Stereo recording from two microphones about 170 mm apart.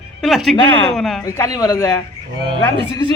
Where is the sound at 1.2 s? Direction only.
20° left (ahead or behind).